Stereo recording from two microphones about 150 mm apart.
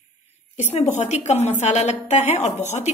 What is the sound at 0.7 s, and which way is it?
A woman's voice, 50° left (ahead or behind).